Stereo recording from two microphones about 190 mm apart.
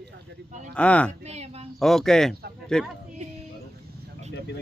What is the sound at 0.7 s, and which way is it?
Speech, 5° left (ahead or behind).